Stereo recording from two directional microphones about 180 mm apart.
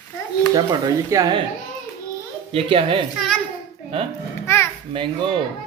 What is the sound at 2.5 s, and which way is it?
Speech, 30° right (ahead or behind).